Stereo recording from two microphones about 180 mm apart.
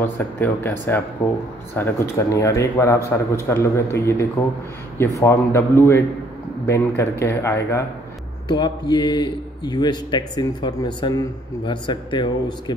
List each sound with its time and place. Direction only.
0.0 s a man's voice: 10° left (ahead or behind)